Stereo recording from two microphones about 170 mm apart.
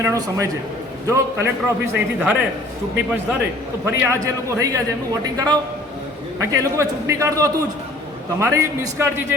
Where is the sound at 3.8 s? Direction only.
15° right (ahead or behind).